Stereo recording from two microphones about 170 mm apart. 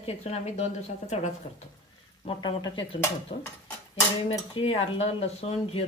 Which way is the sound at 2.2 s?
30° left (ahead or behind).